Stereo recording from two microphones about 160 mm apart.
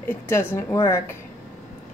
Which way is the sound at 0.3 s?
15° left (ahead or behind).